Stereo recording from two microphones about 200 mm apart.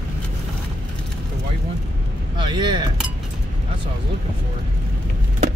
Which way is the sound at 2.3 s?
20° right (ahead or behind).